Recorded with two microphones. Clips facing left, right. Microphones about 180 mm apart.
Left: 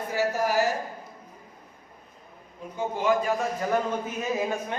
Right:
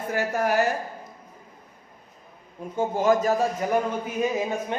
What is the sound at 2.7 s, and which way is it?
Speech, 45° right (ahead or behind).